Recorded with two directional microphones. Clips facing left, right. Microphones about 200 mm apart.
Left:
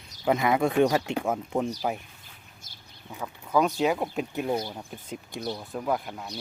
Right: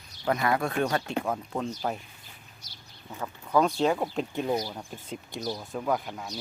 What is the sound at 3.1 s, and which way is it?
Speech, 5° left (ahead or behind).